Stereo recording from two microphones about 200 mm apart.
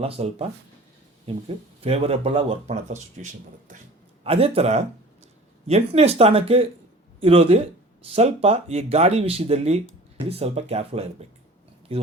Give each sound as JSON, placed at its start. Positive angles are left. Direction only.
{"t": 0.0, "sound": "speech", "side_deg": -30}